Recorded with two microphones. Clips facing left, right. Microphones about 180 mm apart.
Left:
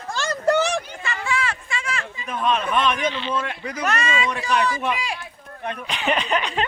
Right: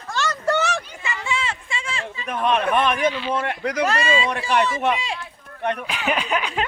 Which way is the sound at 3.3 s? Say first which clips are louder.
Right 4 dB; 60° right (ahead or behind).